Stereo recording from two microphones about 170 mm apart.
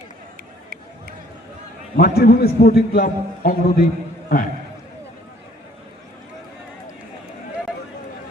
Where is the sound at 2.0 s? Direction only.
65° left (ahead or behind).